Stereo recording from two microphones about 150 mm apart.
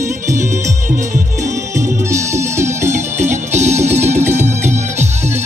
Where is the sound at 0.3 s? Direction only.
20° right (ahead or behind).